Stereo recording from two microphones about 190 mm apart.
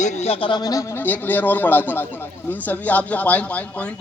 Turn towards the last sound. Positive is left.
turn(degrees=5)  # may be behind; listen again after turning